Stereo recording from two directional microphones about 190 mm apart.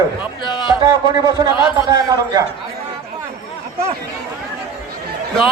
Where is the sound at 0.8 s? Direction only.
20° right (ahead or behind).